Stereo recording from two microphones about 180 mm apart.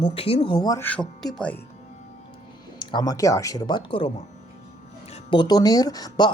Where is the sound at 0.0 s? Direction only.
30° left (ahead or behind).